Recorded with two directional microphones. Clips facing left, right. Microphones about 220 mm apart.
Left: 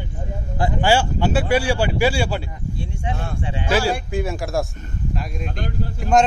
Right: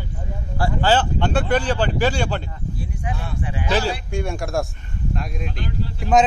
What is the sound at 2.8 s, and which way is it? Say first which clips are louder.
Speech: left 3 dB; 25° left (ahead or behind).